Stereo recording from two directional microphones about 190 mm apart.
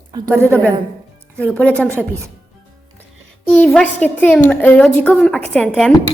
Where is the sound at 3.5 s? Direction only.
5° left (ahead or behind).